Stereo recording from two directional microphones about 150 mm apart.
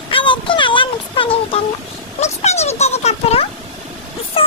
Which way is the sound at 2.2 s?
45° left (ahead or behind).